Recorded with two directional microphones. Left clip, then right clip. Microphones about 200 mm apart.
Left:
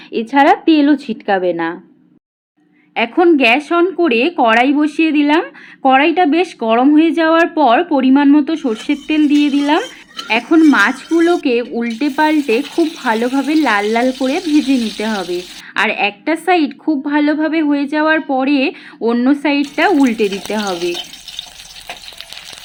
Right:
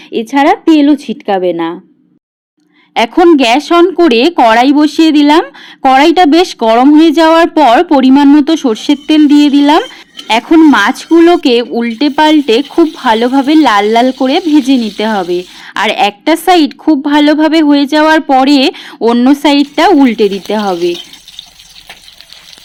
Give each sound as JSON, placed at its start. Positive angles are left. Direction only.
{"t": 0.1, "sound": "speech", "side_deg": -30}
{"t": 2.9, "sound": "speech", "side_deg": -50}